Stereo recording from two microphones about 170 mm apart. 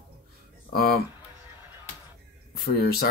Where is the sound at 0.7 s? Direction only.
60° left (ahead or behind).